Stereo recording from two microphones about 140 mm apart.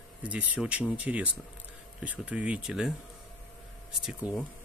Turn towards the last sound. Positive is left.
turn(degrees=-5)  # may be behind; listen again after turning